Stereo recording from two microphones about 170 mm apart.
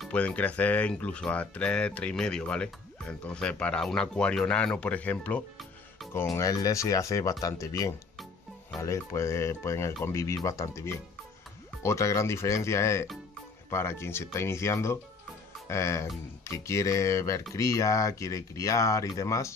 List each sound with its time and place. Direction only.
0.0 s speech: 5° left (ahead or behind)
6.3 s speech: 20° left (ahead or behind)